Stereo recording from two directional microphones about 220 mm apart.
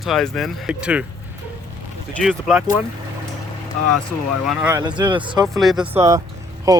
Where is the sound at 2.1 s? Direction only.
Centre (ahead or behind).